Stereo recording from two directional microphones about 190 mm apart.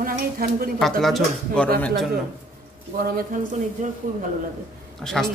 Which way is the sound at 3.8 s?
40° right (ahead or behind).